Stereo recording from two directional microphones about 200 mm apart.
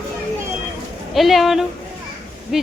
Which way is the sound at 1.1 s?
Centre (ahead or behind).